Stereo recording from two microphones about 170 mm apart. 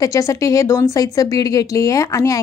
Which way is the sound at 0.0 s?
20° left (ahead or behind).